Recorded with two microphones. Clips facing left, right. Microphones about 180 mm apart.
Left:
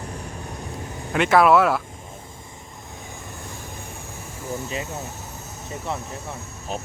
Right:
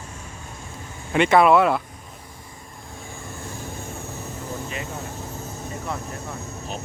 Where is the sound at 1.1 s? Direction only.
Centre (ahead or behind).